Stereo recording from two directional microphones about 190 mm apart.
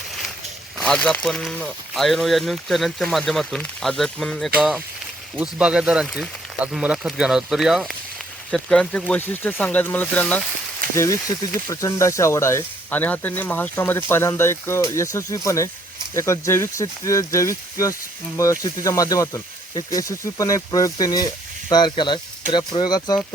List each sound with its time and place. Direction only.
0.8 s speech: 5° left (ahead or behind); by 23.1 s 20° left (ahead or behind)